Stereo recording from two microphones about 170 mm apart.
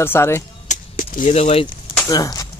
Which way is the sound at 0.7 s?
50° left (ahead or behind).